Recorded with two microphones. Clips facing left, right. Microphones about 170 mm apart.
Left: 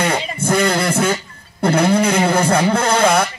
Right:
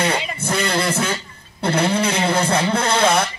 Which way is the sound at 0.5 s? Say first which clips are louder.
Left 5 dB; 45° left (ahead or behind).